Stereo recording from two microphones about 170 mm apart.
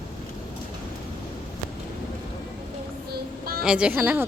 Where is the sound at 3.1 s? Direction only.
60° right (ahead or behind).